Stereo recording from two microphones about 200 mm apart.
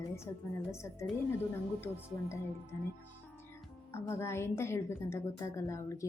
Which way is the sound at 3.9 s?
15° left (ahead or behind).